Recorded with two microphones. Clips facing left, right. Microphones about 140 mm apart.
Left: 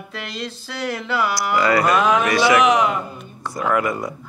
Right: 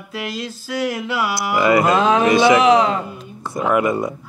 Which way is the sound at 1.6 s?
20° right (ahead or behind).